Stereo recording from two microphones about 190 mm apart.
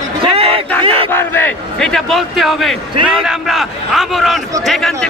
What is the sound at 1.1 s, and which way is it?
A man's voice, 10° left (ahead or behind).